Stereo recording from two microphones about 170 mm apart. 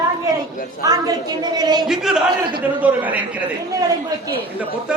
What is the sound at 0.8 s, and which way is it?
A woman's voice, 20° right (ahead or behind).